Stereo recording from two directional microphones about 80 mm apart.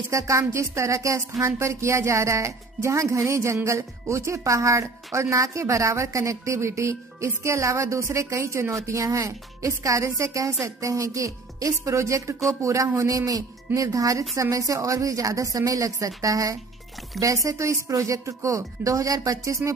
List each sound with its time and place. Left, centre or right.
0.1 s speech: right